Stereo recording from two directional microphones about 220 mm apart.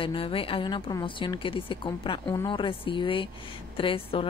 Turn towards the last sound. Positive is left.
turn(degrees=25)  # may be behind; listen again after turning